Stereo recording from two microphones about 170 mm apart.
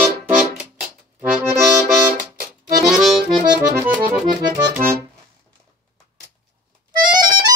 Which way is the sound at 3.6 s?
15° right (ahead or behind).